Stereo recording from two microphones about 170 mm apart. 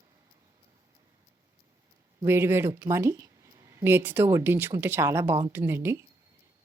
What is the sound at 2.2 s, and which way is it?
Speech, 15° right (ahead or behind).